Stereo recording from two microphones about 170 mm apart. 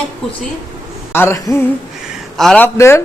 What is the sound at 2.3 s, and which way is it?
Speech, 5° left (ahead or behind).